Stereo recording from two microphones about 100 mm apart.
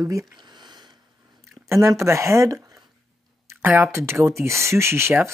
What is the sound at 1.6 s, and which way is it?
Speech, 30° right (ahead or behind).